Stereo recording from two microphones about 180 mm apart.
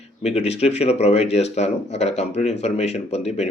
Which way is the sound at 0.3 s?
35° left (ahead or behind).